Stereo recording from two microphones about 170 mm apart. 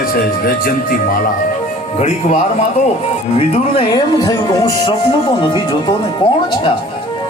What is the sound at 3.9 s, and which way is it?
Speech, 25° left (ahead or behind).